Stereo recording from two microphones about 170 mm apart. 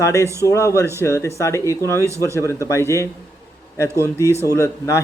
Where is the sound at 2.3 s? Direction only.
15° left (ahead or behind).